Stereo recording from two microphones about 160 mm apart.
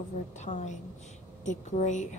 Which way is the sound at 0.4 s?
45° left (ahead or behind).